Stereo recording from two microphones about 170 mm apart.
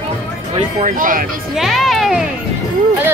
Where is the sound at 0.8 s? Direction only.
55° right (ahead or behind).